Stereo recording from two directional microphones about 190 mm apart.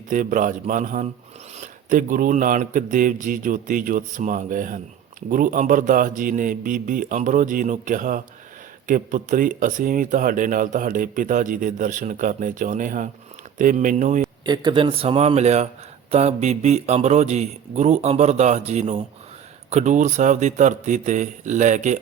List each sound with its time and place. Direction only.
0.1 s speech: 45° right (ahead or behind)
14.4 s a man's voice: 25° right (ahead or behind); by 21.9 s 40° right (ahead or behind)